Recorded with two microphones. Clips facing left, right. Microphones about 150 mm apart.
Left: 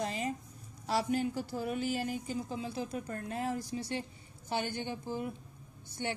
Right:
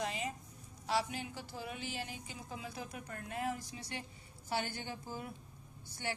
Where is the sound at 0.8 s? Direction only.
45° left (ahead or behind).